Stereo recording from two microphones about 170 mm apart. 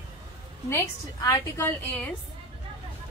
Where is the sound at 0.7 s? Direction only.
20° left (ahead or behind).